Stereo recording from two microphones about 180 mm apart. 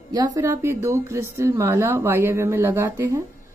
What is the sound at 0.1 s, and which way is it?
A woman's voice, 20° right (ahead or behind).